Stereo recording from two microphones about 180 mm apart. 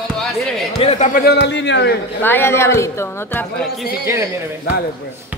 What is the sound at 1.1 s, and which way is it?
Speech, 65° left (ahead or behind).